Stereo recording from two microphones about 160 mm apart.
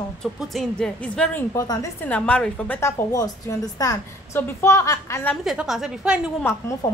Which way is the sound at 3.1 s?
20° left (ahead or behind).